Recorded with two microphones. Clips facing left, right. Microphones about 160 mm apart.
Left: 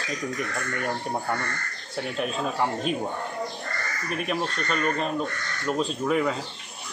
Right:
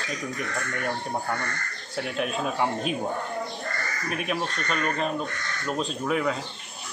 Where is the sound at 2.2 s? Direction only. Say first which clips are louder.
Even; 5° right (ahead or behind).